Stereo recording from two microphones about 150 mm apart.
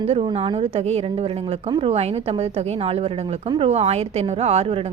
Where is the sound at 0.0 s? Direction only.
45° right (ahead or behind).